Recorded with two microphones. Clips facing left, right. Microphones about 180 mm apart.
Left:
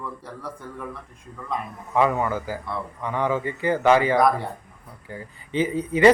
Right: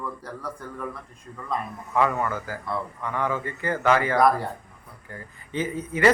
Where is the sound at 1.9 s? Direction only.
20° left (ahead or behind).